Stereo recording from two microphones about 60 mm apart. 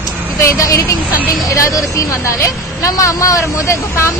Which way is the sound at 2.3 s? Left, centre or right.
Left.